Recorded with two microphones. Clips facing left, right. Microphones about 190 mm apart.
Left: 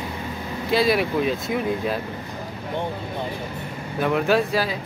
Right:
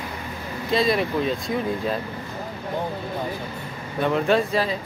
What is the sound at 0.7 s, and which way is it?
Speech, 5° left (ahead or behind).